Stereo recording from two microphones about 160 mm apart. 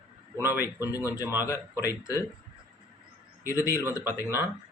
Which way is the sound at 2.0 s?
20° left (ahead or behind).